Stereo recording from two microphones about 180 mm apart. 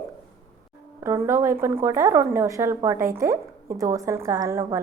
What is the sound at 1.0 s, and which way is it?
Speech, 15° right (ahead or behind).